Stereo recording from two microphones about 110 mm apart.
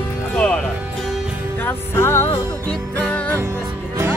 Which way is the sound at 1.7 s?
25° left (ahead or behind).